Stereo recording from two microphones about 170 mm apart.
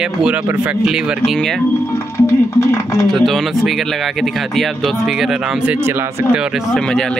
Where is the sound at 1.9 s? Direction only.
15° left (ahead or behind).